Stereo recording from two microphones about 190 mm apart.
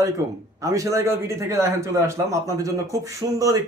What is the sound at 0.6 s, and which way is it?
A man's voice, 15° right (ahead or behind).